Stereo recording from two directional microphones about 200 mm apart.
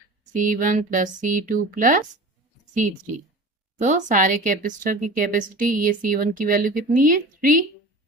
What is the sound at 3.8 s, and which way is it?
A woman's voice, 35° right (ahead or behind).